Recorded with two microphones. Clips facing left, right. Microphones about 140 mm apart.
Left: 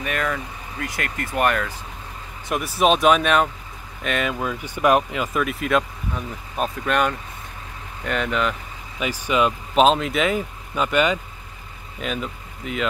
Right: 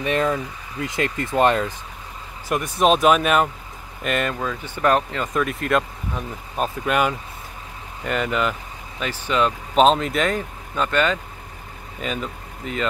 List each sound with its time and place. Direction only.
0.0 s speech: 30° right (ahead or behind)
2.4 s speech: centre (ahead or behind)
9.0 s speech: 10° left (ahead or behind)
9.8 s speech: centre (ahead or behind)
12.0 s speech: centre (ahead or behind)